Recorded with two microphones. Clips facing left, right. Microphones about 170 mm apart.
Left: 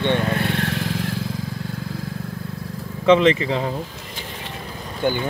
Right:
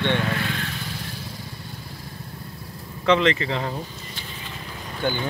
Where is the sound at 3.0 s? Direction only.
20° left (ahead or behind).